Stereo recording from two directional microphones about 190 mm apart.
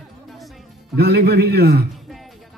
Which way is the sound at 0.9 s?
55° right (ahead or behind).